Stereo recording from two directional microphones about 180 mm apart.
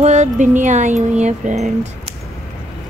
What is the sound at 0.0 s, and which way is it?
Speech, 40° right (ahead or behind).